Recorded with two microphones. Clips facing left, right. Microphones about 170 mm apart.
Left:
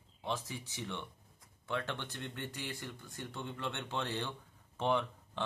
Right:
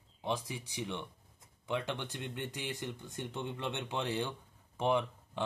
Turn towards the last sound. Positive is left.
turn(degrees=-15)  # may be behind; listen again after turning